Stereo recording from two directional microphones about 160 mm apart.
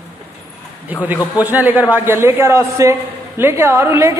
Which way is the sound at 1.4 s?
10° right (ahead or behind).